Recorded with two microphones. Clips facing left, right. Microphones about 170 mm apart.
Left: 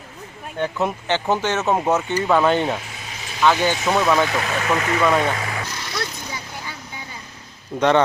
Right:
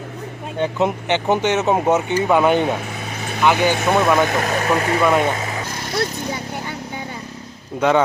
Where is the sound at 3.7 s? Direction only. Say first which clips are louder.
Right 2 dB; 55° right (ahead or behind); by 5.0 s 35° right (ahead or behind).